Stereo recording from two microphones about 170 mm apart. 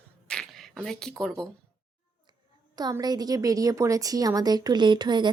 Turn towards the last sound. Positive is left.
turn(degrees=-25)  # may be behind; listen again after turning